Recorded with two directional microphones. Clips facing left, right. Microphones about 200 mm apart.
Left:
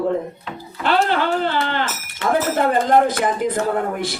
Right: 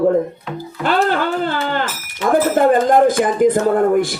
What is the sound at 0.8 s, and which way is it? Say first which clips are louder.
A man's voice: right 2 dB; 45° right (ahead or behind).